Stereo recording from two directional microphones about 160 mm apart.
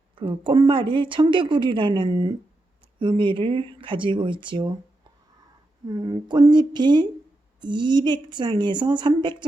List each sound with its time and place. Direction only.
0.2 s a woman's voice: 30° right (ahead or behind)
5.9 s a woman's voice: 25° right (ahead or behind)